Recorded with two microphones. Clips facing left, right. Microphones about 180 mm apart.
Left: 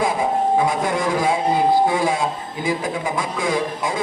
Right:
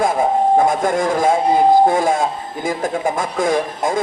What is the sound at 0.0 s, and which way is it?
A man's voice, 45° right (ahead or behind).